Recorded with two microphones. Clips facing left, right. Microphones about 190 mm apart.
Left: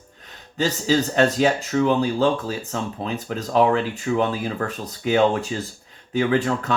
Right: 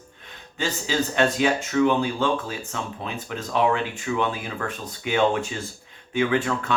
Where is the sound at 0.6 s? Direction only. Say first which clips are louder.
Left 5 dB; 40° left (ahead or behind).